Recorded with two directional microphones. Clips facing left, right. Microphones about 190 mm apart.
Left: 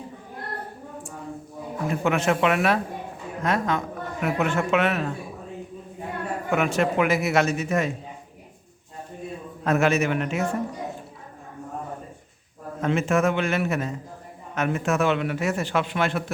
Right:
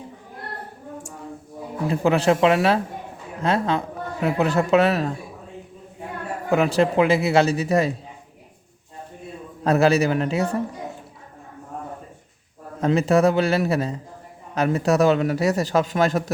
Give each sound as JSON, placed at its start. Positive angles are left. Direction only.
{"t": 1.9, "sound": "a man's voice", "side_deg": -30}
{"t": 6.5, "sound": "a man's voice", "side_deg": -35}
{"t": 9.6, "sound": "a man's voice", "side_deg": -35}
{"t": 12.8, "sound": "a man's voice", "side_deg": -35}